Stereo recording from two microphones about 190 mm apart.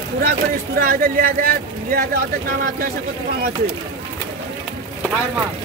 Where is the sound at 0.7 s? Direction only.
50° right (ahead or behind).